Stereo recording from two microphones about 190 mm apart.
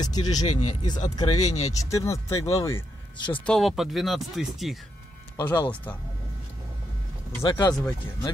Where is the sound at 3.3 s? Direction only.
5° left (ahead or behind).